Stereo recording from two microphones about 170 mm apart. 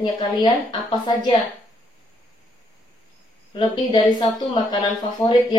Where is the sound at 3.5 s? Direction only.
25° left (ahead or behind).